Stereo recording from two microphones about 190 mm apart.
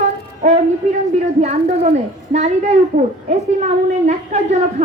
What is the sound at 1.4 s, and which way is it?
Speech, 35° right (ahead or behind).